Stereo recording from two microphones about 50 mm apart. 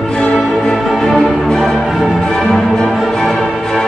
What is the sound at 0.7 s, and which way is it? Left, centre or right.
Music, centre.